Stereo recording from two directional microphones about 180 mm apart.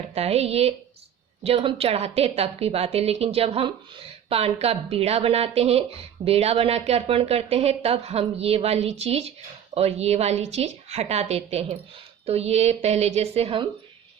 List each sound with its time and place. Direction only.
0.1 s a woman's voice: 35° right (ahead or behind)